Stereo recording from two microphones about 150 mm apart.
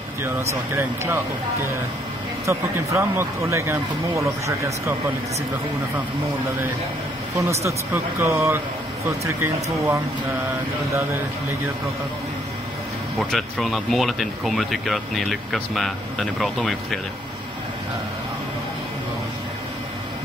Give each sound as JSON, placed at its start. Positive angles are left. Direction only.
{"t": 0.7, "sound": "speech", "side_deg": -20}
{"t": 7.3, "sound": "speech", "side_deg": -20}
{"t": 13.2, "sound": "speech", "side_deg": 0}